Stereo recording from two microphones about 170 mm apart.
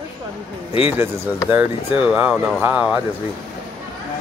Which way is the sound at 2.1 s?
10° right (ahead or behind).